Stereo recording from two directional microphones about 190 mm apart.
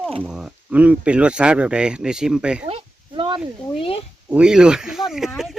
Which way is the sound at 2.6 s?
30° right (ahead or behind).